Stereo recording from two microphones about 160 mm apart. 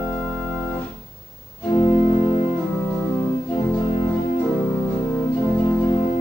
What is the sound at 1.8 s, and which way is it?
Organ, 45° left (ahead or behind).